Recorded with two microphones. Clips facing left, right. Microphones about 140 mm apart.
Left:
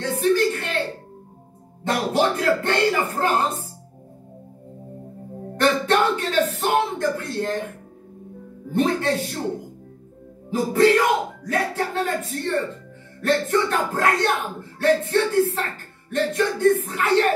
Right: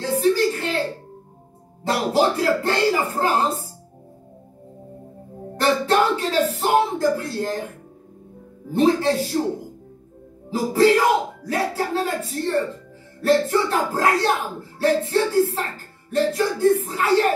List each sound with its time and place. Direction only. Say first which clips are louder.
0.0 s a sound: right 1 dB; 30° right (ahead or behind)
1.9 s speech: right 1 dB; 30° right (ahead or behind)
5.6 s speech: right 1 dB; 30° right (ahead or behind)
8.7 s speech: right 3 dB; 30° right (ahead or behind)
10.5 s speech: right 1 dB; 30° right (ahead or behind)